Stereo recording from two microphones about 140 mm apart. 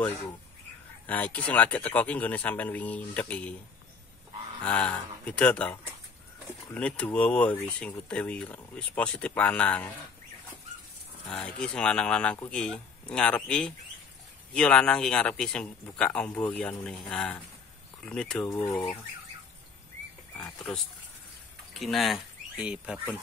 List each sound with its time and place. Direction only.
1.0 s speech: 10° left (ahead or behind)
4.6 s speech: 10° left (ahead or behind)
11.2 s speech: 5° left (ahead or behind)
18.6 s speech: 15° left (ahead or behind)
21.7 s speech: centre (ahead or behind)